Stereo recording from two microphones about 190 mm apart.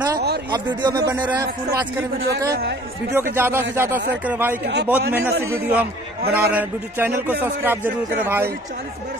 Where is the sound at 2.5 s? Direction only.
60° right (ahead or behind).